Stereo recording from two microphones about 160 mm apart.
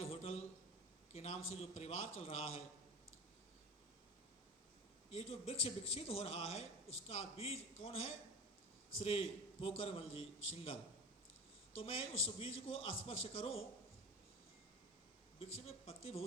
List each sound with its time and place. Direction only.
0.0 s a sound: 40° left (ahead or behind)
1.1 s a man's voice: 40° left (ahead or behind)
5.2 s a man's voice: 40° left (ahead or behind)
11.8 s a man's voice: 35° left (ahead or behind)
15.4 s a man's voice: 40° left (ahead or behind)